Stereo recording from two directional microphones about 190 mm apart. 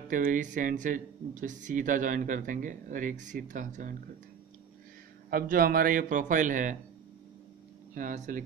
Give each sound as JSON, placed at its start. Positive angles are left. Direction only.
{"t": 0.1, "sound": "speech", "side_deg": -45}
{"t": 5.3, "sound": "speech", "side_deg": -50}
{"t": 7.9, "sound": "speech", "side_deg": -45}